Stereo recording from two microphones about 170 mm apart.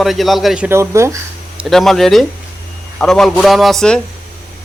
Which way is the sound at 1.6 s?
Centre (ahead or behind).